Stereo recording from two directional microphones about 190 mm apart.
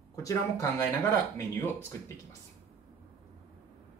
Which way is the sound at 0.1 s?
15° left (ahead or behind).